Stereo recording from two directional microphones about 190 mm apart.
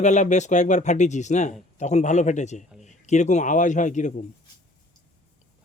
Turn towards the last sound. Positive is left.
turn(degrees=40)  # may be behind; listen again after turning